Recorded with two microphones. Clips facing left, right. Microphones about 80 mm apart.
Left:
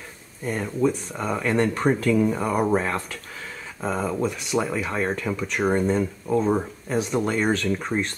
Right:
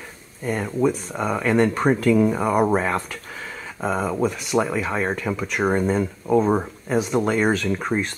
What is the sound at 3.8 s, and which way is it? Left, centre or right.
Speech, centre.